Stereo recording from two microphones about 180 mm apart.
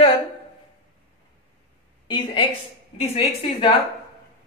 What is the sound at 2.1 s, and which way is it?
Speech, 25° left (ahead or behind).